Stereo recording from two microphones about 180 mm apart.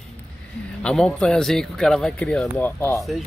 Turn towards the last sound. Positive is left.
turn(degrees=15)  # may be behind; listen again after turning